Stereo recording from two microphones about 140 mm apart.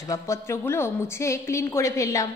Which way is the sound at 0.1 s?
20° left (ahead or behind).